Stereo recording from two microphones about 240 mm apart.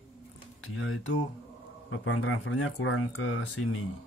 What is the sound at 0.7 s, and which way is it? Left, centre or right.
Speech, left.